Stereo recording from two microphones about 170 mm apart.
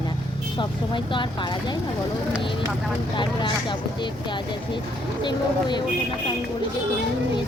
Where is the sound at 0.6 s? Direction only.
30° left (ahead or behind).